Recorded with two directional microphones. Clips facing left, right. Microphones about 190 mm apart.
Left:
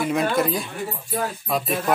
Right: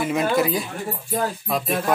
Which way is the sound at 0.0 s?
Centre (ahead or behind).